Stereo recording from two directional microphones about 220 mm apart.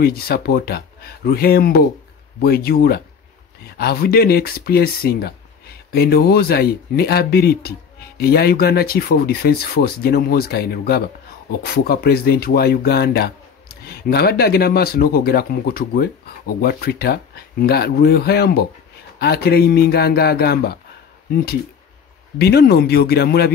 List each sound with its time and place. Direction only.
0.0 s speech: 45° left (ahead or behind)
22.4 s speech: 45° left (ahead or behind)